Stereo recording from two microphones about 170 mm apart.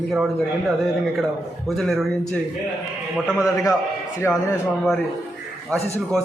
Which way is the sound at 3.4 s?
20° left (ahead or behind).